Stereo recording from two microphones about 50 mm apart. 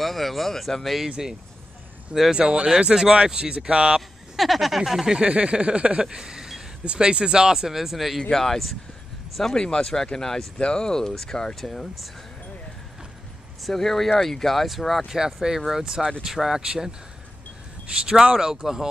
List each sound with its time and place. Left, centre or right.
0.0 s speech: centre
1.0 s speech: centre
2.3 s speech: centre
4.4 s speech: centre
5.0 s speech: centre
6.0 s a sound: centre
6.9 s speech: centre
8.2 s speech: centre
13.6 s speech: centre